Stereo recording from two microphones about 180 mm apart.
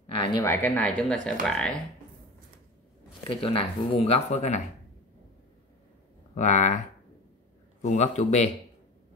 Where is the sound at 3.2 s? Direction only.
30° left (ahead or behind).